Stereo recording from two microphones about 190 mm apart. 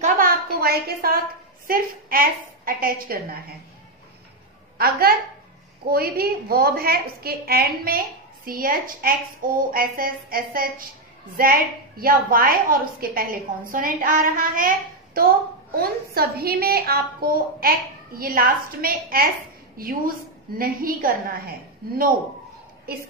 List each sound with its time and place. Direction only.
0.0 s a sound: 50° right (ahead or behind)
1.7 s a woman's voice: 50° right (ahead or behind)
4.7 s a woman's voice: 50° right (ahead or behind)
22.9 s a woman's voice: 55° right (ahead or behind)